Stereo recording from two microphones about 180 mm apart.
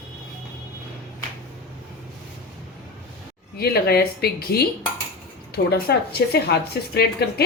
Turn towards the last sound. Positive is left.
turn(degrees=60)  # may be behind; listen again after turning